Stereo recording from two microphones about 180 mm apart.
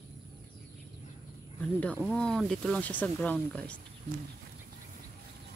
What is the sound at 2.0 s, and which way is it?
Speech, 5° left (ahead or behind).